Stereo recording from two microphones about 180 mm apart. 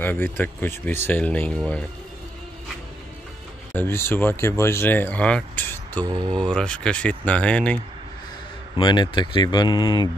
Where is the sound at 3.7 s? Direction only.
15° left (ahead or behind).